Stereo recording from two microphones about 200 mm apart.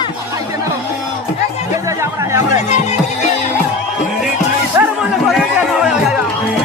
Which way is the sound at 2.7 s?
35° left (ahead or behind).